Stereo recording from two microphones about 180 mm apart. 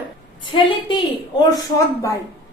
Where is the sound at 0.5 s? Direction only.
25° left (ahead or behind).